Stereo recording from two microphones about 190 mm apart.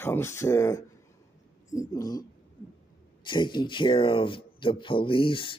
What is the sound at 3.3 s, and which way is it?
Speech, 25° left (ahead or behind).